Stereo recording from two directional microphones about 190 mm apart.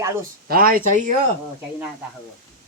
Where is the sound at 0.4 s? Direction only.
50° right (ahead or behind).